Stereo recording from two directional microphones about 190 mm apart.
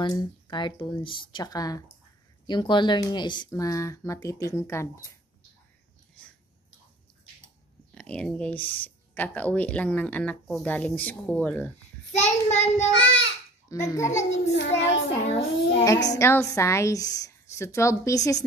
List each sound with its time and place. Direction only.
0.0 s speech: 20° left (ahead or behind)
7.9 s speech: 5° left (ahead or behind)
12.1 s child singing: 35° left (ahead or behind)
12.9 s a child's voice: 80° left
13.7 s speech: 15° left (ahead or behind)
14.3 s a child's voice: 65° left (ahead or behind)
15.8 s speech: 20° left (ahead or behind)